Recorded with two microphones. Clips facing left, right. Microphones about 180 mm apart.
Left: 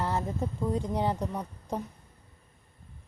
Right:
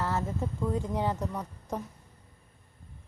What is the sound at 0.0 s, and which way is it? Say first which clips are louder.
Speech: left 1 dB; 15° left (ahead or behind).